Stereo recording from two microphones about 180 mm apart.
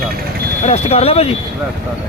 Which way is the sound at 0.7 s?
35° left (ahead or behind).